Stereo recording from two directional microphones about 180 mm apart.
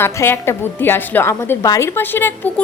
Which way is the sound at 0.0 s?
15° left (ahead or behind).